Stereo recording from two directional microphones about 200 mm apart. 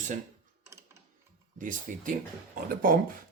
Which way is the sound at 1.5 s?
40° right (ahead or behind).